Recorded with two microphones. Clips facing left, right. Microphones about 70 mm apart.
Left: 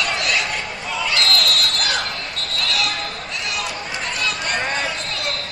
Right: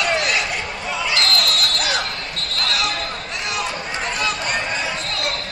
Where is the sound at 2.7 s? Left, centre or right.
Right.